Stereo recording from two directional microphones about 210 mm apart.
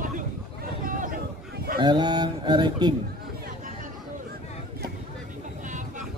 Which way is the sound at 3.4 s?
40° right (ahead or behind).